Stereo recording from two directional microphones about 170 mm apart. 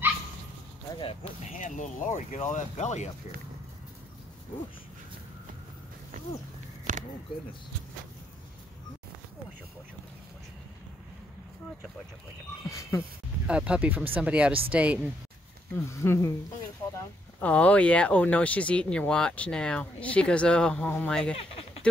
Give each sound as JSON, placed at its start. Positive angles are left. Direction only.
{"t": 0.9, "sound": "speech", "side_deg": 35}
{"t": 1.5, "sound": "speech", "side_deg": 45}
{"t": 6.8, "sound": "a sound", "side_deg": -50}
{"t": 13.5, "sound": "speech", "side_deg": -5}
{"t": 15.7, "sound": "speech", "side_deg": 15}
{"t": 17.4, "sound": "speech", "side_deg": 10}
{"t": 21.4, "sound": "a sound", "side_deg": 35}